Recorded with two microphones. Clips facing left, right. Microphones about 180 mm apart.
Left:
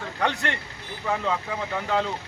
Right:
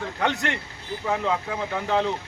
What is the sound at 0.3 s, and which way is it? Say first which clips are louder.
Speech: right 2 dB; 15° right (ahead or behind).